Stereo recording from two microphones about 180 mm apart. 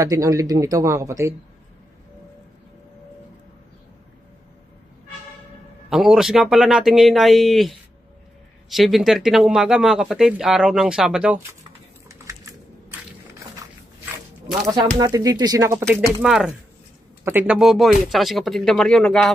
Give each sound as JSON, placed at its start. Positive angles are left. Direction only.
{"t": 0.0, "sound": "speech", "side_deg": -20}
{"t": 5.9, "sound": "speech", "side_deg": -5}
{"t": 12.1, "sound": "typing", "side_deg": -15}
{"t": 15.0, "sound": "speech", "side_deg": -20}
{"t": 16.2, "sound": "speech", "side_deg": -5}